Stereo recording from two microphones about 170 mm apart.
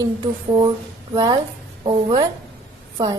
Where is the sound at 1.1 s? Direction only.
25° right (ahead or behind).